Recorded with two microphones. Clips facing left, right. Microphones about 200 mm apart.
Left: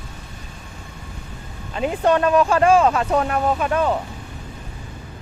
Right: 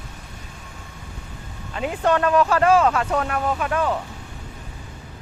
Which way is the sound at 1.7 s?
25° left (ahead or behind).